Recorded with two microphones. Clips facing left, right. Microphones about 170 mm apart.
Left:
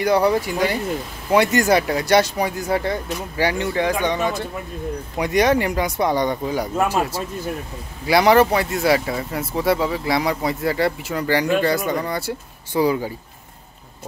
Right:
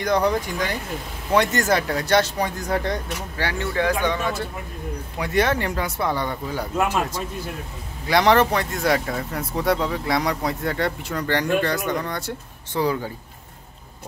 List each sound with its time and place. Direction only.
0.0 s speech: 10° left (ahead or behind)
3.4 s speech: 20° left (ahead or behind)